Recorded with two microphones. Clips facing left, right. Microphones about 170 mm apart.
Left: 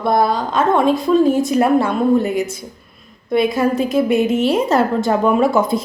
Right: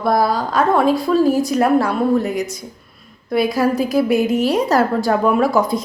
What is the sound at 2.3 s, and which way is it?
Speech, 25° left (ahead or behind).